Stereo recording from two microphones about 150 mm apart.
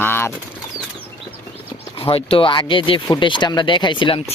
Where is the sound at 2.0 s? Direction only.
35° left (ahead or behind).